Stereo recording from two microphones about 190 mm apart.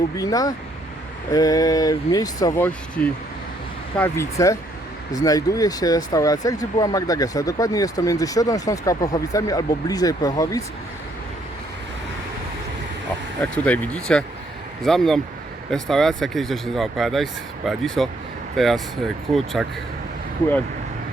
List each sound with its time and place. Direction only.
0.2 s speech: 20° left (ahead or behind)
13.4 s speech: 10° left (ahead or behind)